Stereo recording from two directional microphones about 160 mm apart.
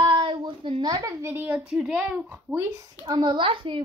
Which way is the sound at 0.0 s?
30° right (ahead or behind).